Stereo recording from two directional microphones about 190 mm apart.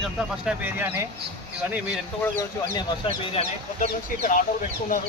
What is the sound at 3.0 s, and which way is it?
Speech, 30° left (ahead or behind).